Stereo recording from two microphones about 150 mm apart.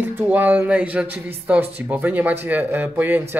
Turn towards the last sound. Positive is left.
turn(degrees=-10)  # may be behind; listen again after turning